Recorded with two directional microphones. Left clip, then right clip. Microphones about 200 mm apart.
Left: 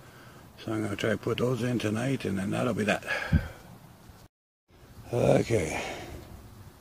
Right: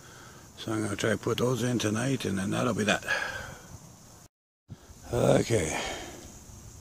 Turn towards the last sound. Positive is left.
turn(degrees=-5)  # may be behind; listen again after turning